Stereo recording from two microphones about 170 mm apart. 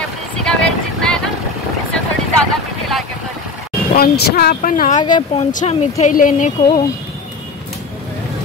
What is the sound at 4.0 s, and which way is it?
Speech, 60° left (ahead or behind).